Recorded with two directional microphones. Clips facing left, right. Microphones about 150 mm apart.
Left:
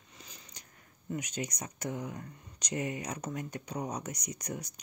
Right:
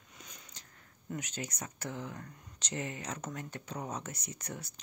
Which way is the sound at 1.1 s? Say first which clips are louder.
Left 4 dB; 10° left (ahead or behind).